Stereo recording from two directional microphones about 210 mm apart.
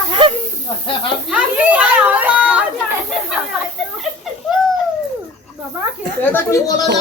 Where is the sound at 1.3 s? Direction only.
5° right (ahead or behind).